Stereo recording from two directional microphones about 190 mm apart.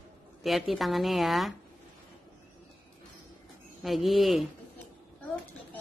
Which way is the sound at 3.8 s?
Centre (ahead or behind).